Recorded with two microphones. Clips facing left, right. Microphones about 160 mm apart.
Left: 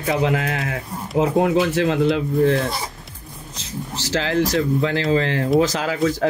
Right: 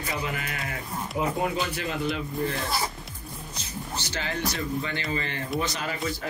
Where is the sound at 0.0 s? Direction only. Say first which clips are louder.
Left 11 dB; 90° left.